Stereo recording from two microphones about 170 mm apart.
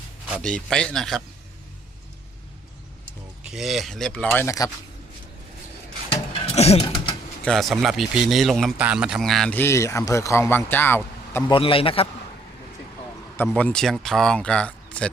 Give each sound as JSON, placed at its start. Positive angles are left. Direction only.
{"t": 0.3, "sound": "a man's voice", "side_deg": 5}
{"t": 3.5, "sound": "a man's voice", "side_deg": 0}
{"t": 6.4, "sound": "a sound", "side_deg": 35}
{"t": 7.4, "sound": "a man's voice", "side_deg": 0}
{"t": 11.4, "sound": "a man's voice", "side_deg": 30}
{"t": 13.6, "sound": "a man's voice", "side_deg": 5}